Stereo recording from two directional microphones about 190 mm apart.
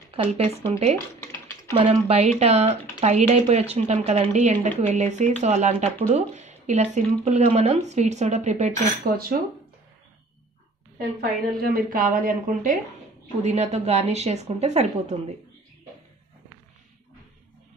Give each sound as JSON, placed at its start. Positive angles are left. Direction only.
{"t": 0.1, "sound": "speech", "side_deg": -35}
{"t": 0.9, "sound": "a sound", "side_deg": 15}
{"t": 1.9, "sound": "speech", "side_deg": -35}
{"t": 11.0, "sound": "a woman's voice", "side_deg": -55}
{"t": 13.4, "sound": "speech", "side_deg": -35}